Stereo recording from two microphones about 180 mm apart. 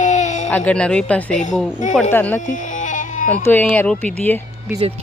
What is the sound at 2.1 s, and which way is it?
Speech, 10° left (ahead or behind).